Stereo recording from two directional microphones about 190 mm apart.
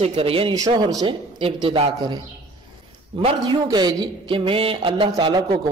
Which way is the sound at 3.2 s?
25° right (ahead or behind).